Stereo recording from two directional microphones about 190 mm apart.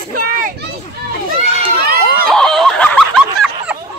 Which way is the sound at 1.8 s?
55° right (ahead or behind).